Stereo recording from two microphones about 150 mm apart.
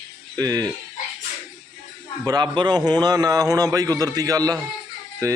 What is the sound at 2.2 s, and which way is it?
A man's voice, 30° right (ahead or behind).